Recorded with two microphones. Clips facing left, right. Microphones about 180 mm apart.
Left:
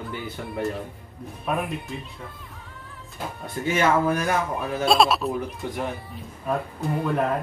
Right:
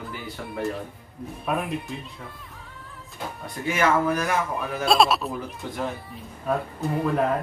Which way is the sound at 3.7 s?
30° left (ahead or behind).